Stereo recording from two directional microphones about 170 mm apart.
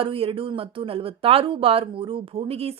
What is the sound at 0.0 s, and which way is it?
Speech, 30° right (ahead or behind).